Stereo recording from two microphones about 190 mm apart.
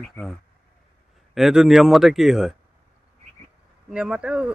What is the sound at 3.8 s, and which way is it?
Speech, 5° right (ahead or behind).